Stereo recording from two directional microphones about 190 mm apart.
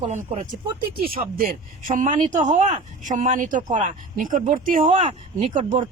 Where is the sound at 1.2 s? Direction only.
50° right (ahead or behind).